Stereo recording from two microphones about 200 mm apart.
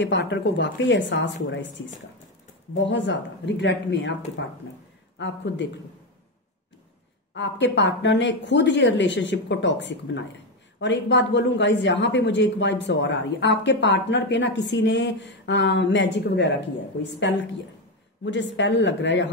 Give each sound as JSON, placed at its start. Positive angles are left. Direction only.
{"t": 0.0, "sound": "speech", "side_deg": 60}
{"t": 2.8, "sound": "speech", "side_deg": 65}
{"t": 5.2, "sound": "speech", "side_deg": 65}
{"t": 7.3, "sound": "speech", "side_deg": 60}